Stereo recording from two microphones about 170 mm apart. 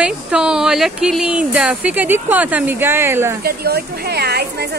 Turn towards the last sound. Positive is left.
turn(degrees=-75)  # may be behind; listen again after turning